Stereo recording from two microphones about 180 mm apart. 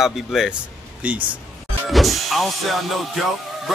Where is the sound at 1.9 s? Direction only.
Centre (ahead or behind).